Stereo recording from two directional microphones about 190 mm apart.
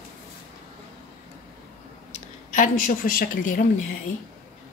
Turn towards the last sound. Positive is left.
turn(degrees=45)  # may be behind; listen again after turning